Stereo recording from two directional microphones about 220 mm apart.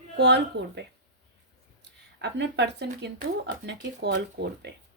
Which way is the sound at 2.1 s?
50° right (ahead or behind).